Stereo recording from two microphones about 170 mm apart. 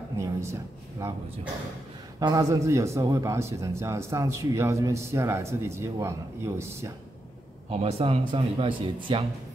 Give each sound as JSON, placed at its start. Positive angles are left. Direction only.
{"t": 0.2, "sound": "speech", "side_deg": -15}
{"t": 2.1, "sound": "a man's voice", "side_deg": -20}
{"t": 7.7, "sound": "speech", "side_deg": -35}